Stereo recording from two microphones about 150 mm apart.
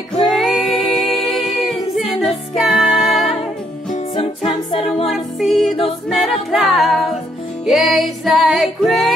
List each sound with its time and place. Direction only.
0.1 s music: centre (ahead or behind)
4.2 s music: 40° left (ahead or behind)
5.0 s music: centre (ahead or behind)
5.9 s a capella: centre (ahead or behind)
7.6 s music: centre (ahead or behind)